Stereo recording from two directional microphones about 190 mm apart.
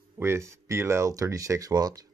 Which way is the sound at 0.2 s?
15° right (ahead or behind).